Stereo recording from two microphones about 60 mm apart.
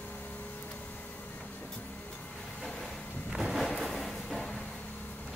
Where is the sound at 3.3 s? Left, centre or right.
Centre.